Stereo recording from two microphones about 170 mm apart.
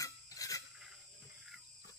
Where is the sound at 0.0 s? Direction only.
20° left (ahead or behind).